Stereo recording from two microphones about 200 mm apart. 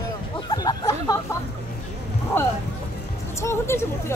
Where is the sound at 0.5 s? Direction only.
20° left (ahead or behind).